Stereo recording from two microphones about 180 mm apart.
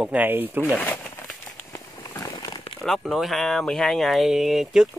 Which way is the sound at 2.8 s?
Centre (ahead or behind).